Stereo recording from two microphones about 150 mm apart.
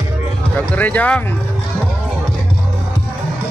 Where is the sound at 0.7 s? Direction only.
10° left (ahead or behind).